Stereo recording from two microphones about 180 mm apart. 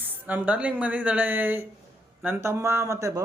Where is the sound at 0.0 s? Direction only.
10° right (ahead or behind).